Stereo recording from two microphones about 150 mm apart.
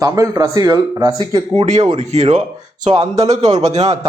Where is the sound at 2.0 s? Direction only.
50° right (ahead or behind).